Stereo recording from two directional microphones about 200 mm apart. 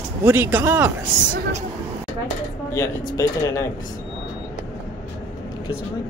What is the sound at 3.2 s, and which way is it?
Speech, 15° left (ahead or behind).